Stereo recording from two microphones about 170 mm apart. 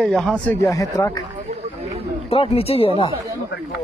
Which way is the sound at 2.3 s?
35° left (ahead or behind).